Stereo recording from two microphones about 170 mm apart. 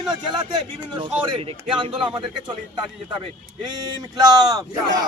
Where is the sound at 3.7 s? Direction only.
25° right (ahead or behind).